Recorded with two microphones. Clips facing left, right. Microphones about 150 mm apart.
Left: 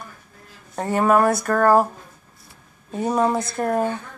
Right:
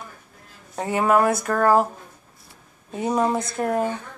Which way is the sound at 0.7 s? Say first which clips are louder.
Left 2 dB; 10° right (ahead or behind).